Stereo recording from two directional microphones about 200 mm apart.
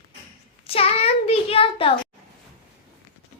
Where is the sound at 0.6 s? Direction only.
30° left (ahead or behind).